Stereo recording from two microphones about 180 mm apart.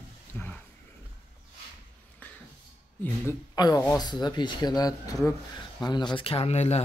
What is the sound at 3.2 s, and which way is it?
Speech, 20° left (ahead or behind).